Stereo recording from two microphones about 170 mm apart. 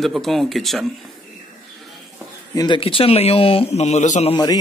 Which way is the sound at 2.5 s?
25° left (ahead or behind).